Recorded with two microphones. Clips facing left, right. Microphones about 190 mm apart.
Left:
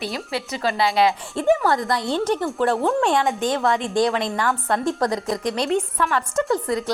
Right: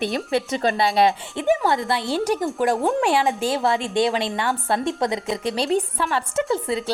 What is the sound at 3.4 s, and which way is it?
A woman's voice, 30° right (ahead or behind).